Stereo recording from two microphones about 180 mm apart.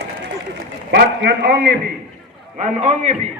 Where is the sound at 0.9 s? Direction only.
60° right (ahead or behind).